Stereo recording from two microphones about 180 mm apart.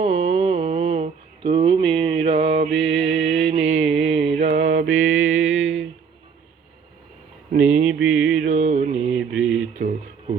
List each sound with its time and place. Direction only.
0.0 s a sound: 30° right (ahead or behind)
4.9 s music: 90° right
7.7 s mantra: 45° right (ahead or behind)
7.9 s music: 5° right (ahead or behind)
8.4 s music: 40° right (ahead or behind)
9.7 s a sound: 40° right (ahead or behind)